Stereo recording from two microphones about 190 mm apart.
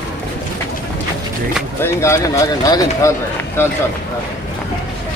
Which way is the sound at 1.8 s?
15° left (ahead or behind).